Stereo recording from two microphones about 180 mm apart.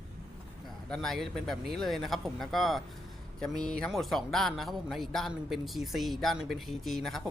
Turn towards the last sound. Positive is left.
turn(degrees=0)  # may be behind; listen again after turning